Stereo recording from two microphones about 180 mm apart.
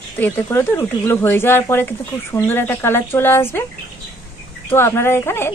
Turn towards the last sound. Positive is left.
turn(degrees=15)  # may be behind; listen again after turning